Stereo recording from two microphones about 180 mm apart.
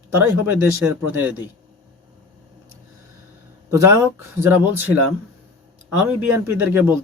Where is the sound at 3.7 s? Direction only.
15° right (ahead or behind).